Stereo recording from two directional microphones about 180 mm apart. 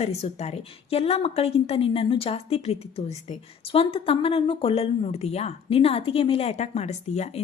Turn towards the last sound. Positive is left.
turn(degrees=40)  # may be behind; listen again after turning